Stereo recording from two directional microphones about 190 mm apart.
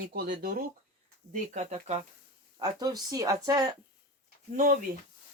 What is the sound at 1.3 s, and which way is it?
Speech, 40° right (ahead or behind).